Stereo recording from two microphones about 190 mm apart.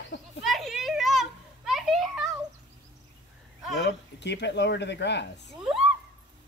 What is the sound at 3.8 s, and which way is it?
Speech, 65° left (ahead or behind).